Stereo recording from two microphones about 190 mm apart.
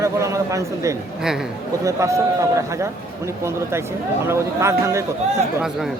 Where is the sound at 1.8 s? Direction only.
15° right (ahead or behind).